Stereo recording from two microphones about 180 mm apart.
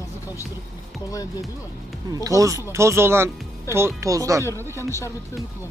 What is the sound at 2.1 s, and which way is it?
Speech, 20° right (ahead or behind).